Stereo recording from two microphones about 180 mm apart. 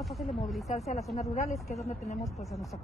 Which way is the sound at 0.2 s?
Centre (ahead or behind).